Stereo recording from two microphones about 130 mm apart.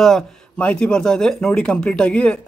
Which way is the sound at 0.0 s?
5° left (ahead or behind).